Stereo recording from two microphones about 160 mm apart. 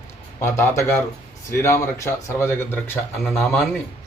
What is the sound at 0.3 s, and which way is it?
Speech, 15° left (ahead or behind).